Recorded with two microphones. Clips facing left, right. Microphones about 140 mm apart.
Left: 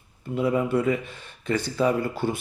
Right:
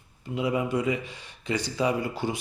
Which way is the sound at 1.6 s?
55° left (ahead or behind).